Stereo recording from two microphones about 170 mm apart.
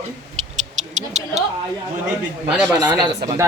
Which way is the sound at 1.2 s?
45° right (ahead or behind).